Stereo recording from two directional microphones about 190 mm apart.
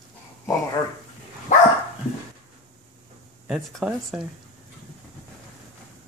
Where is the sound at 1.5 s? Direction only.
40° left (ahead or behind).